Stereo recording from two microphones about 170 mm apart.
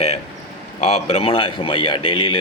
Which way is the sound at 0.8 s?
40° left (ahead or behind).